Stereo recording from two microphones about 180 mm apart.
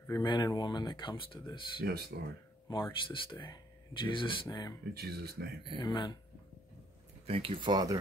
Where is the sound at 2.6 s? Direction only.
25° left (ahead or behind).